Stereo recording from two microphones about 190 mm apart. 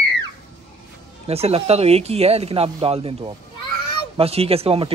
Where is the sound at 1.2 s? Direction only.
35° right (ahead or behind).